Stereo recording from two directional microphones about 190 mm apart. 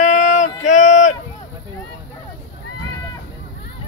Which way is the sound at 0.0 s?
40° left (ahead or behind).